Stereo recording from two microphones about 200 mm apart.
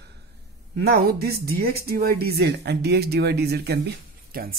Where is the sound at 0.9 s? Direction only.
50° right (ahead or behind).